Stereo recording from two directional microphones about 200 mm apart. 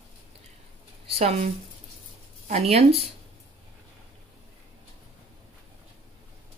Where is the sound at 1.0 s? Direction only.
30° right (ahead or behind).